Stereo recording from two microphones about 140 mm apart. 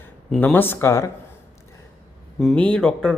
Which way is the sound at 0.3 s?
15° left (ahead or behind).